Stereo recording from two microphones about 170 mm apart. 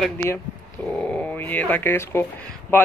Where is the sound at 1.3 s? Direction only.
10° left (ahead or behind).